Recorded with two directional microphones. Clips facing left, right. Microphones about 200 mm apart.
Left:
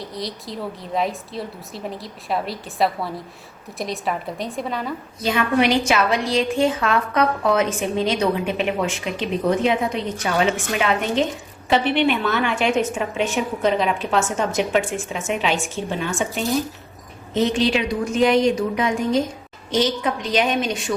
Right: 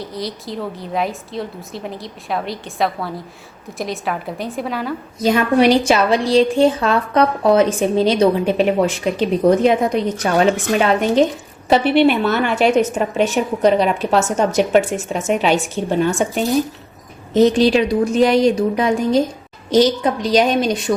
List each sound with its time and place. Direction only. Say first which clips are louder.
0.0 s a woman's voice: right 4 dB; centre (ahead or behind)
5.2 s a woman's voice: right 6 dB; 40° right (ahead or behind)